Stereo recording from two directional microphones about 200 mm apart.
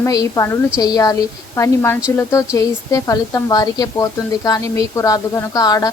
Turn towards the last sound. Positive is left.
turn(degrees=15)  # may be behind; listen again after turning